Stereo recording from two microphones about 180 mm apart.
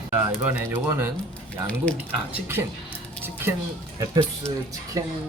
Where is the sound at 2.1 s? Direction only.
10° right (ahead or behind).